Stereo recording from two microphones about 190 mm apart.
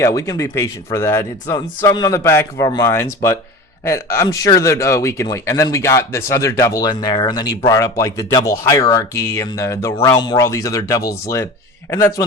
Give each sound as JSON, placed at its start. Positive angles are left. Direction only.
{"t": 0.0, "sound": "speech", "side_deg": 15}